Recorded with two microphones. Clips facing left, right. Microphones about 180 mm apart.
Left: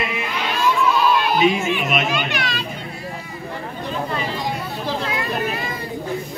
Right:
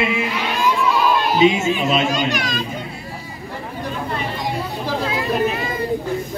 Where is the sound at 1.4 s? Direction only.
25° right (ahead or behind).